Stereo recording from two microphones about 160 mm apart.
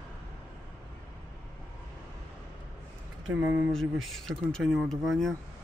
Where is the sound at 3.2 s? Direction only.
10° right (ahead or behind).